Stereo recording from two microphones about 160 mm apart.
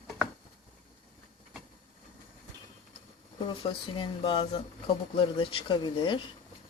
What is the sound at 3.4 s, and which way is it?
Speech, 30° left (ahead or behind).